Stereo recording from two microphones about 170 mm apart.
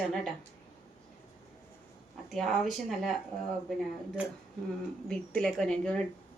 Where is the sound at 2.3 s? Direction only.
Centre (ahead or behind).